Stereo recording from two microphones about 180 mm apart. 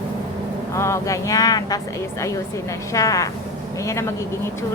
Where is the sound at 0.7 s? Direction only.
15° left (ahead or behind).